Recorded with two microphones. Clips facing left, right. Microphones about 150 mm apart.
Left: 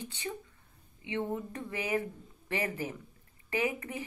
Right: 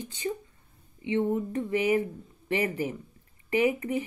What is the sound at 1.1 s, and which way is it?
Speech, 15° right (ahead or behind).